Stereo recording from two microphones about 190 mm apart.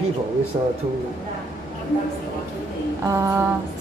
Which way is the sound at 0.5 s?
25° right (ahead or behind).